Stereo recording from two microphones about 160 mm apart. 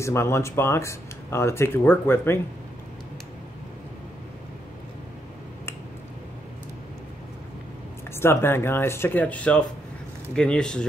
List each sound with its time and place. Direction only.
0.0 s speech: 15° left (ahead or behind)
8.1 s speech: 15° left (ahead or behind)